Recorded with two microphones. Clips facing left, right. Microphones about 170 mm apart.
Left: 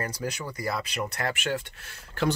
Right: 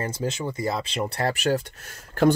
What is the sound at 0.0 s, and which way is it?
Speech, 25° right (ahead or behind).